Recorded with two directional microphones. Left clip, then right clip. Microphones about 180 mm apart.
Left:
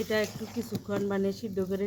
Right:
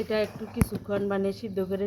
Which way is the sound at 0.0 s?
20° left (ahead or behind).